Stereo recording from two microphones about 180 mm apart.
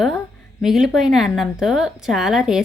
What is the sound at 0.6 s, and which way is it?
A woman's voice, centre (ahead or behind).